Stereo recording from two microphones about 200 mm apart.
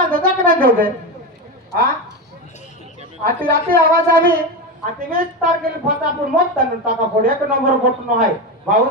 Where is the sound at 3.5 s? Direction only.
45° right (ahead or behind).